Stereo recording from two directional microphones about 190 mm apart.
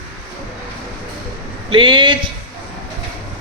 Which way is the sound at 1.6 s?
25° right (ahead or behind).